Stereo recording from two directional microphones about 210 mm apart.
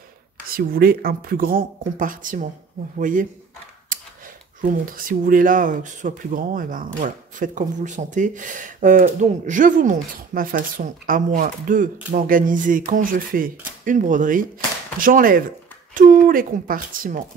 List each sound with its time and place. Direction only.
0.5 s speech: 45° right (ahead or behind)
4.6 s speech: 40° right (ahead or behind)